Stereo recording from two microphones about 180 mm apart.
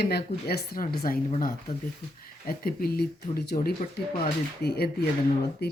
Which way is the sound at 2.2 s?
55° left (ahead or behind).